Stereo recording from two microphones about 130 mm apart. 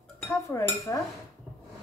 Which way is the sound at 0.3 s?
20° left (ahead or behind).